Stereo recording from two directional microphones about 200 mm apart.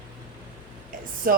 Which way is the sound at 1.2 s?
45° right (ahead or behind).